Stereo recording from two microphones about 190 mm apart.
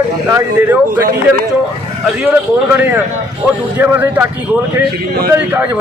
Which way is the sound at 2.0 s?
5° right (ahead or behind).